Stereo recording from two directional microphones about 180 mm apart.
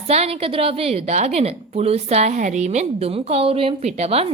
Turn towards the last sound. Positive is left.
turn(degrees=-35)  # may be behind; listen again after turning